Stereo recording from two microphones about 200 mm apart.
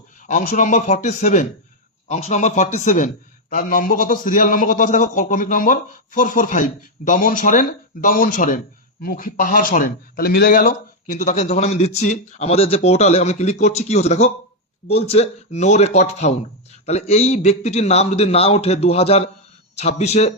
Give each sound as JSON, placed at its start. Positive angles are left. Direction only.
{"t": 0.3, "sound": "a man's voice", "side_deg": 40}